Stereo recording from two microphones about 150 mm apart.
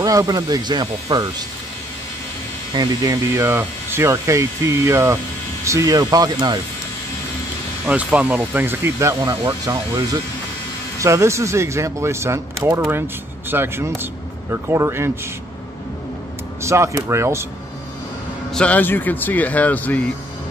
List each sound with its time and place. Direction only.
0.0 s speech: 25° right (ahead or behind)
2.7 s speech: 25° right (ahead or behind)
7.8 s speech: 10° right (ahead or behind)
16.6 s speech: 20° right (ahead or behind)
18.5 s speech: 10° left (ahead or behind)